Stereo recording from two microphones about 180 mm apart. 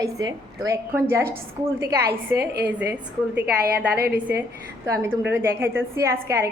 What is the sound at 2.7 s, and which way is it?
Speech, 10° right (ahead or behind).